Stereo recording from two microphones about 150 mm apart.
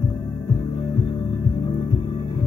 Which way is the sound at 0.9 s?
30° left (ahead or behind).